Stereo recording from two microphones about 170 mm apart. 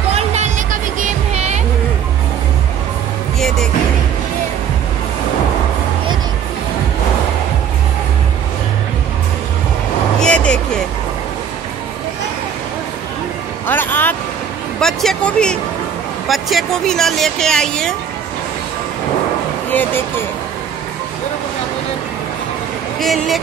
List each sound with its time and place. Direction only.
0.1 s music: 40° right (ahead or behind)
3.3 s music: centre (ahead or behind)
10.2 s vehicle: 5° left (ahead or behind)
13.7 s music: 10° left (ahead or behind)
14.8 s a sound: centre (ahead or behind)
19.7 s a sound: 10° left (ahead or behind)
22.9 s vehicle: centre (ahead or behind)